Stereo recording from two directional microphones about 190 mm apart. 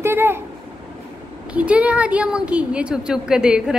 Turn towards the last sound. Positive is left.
turn(degrees=-5)  # may be behind; listen again after turning